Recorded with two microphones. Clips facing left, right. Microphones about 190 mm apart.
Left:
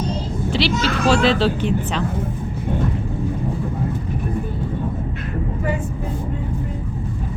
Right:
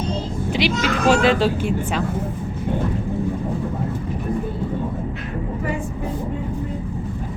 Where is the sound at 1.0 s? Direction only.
15° right (ahead or behind).